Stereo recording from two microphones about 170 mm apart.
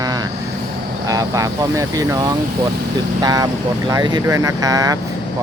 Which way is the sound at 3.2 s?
20° right (ahead or behind).